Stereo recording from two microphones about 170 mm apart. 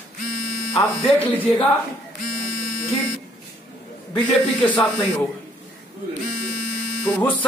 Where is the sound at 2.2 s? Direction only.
60° left (ahead or behind).